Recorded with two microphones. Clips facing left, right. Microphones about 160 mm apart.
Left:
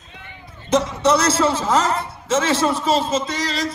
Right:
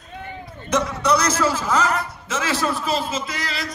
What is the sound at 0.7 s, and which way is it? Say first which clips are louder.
A man's voice: left 3 dB; 25° left (ahead or behind).